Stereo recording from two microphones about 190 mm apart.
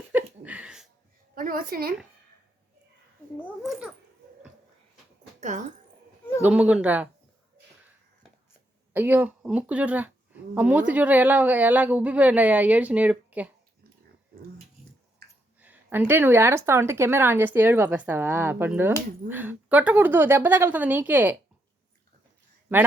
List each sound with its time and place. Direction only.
0.1 s a sound: 5° right (ahead or behind)
1.4 s a woman's voice: 50° right (ahead or behind)
3.6 s a child's voice: centre (ahead or behind)
5.4 s speech: 40° right (ahead or behind)
6.4 s speech: 5° right (ahead or behind)
8.9 s speech: 10° right (ahead or behind)
15.6 s speech: 10° right (ahead or behind)